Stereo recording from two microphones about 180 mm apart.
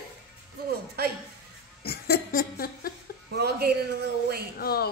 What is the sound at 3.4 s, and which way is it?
A man's voice, 65° right (ahead or behind).